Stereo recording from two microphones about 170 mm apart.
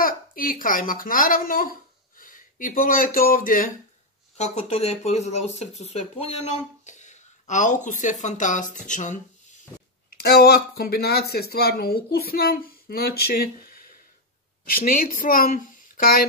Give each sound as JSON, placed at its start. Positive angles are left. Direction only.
{"t": 0.0, "sound": "a woman's voice", "side_deg": 55}
{"t": 4.4, "sound": "speech", "side_deg": 40}
{"t": 10.1, "sound": "speech", "side_deg": 65}